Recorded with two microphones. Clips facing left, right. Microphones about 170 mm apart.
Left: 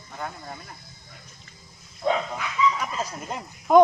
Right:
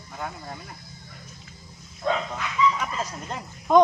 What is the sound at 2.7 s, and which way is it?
Speech, 5° left (ahead or behind).